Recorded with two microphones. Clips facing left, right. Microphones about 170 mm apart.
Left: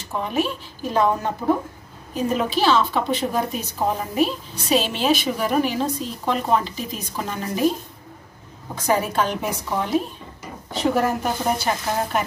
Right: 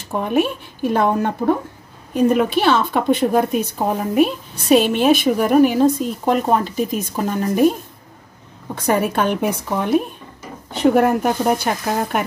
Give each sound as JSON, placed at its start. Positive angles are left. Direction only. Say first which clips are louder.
{"t": 0.2, "sound": "speech", "louder": "right 5 dB", "side_deg": -55}
{"t": 2.3, "sound": "a woman's voice", "louder": "right 3 dB", "side_deg": -60}
{"t": 8.7, "sound": "speech", "louder": "right 3 dB", "side_deg": -60}